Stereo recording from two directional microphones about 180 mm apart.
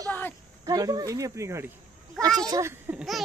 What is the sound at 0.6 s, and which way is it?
Speech, 20° right (ahead or behind).